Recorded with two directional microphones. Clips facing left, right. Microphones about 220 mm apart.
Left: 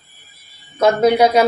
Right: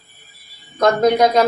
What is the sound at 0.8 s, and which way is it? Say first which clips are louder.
Speech: left 1 dB; 10° left (ahead or behind).